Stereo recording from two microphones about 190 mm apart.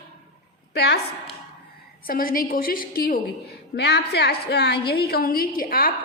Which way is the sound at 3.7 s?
60° left (ahead or behind).